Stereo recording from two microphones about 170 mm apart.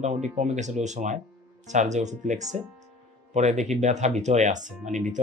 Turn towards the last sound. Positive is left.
turn(degrees=-45)  # may be behind; listen again after turning